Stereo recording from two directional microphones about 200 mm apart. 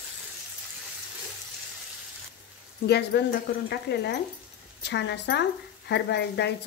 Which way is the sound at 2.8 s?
55° left (ahead or behind).